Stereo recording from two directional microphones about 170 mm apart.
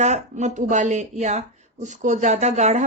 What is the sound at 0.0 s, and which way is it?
Speech, 45° right (ahead or behind).